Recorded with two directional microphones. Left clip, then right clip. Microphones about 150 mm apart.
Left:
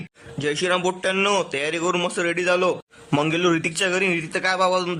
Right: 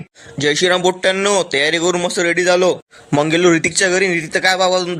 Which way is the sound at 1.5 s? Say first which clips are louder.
Right 8 dB; 25° right (ahead or behind).